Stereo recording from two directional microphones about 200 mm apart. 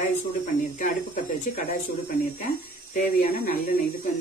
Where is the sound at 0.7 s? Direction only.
40° left (ahead or behind).